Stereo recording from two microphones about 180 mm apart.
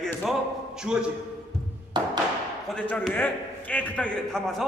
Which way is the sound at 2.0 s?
25° right (ahead or behind).